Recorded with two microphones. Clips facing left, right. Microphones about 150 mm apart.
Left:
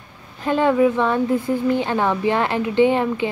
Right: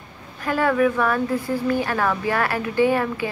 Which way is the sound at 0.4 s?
20° left (ahead or behind).